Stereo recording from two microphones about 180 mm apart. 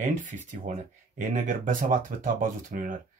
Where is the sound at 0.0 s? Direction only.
45° right (ahead or behind).